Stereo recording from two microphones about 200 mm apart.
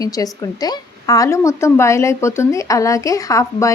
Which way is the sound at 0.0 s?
20° left (ahead or behind).